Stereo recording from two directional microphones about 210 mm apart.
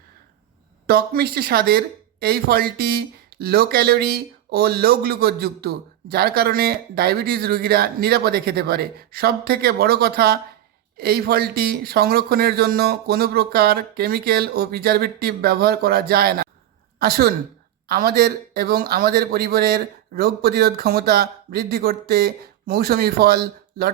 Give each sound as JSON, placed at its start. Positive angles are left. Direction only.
{"t": 0.9, "sound": "speech", "side_deg": -45}